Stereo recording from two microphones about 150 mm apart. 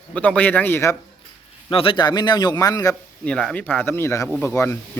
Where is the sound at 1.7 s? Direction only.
35° left (ahead or behind).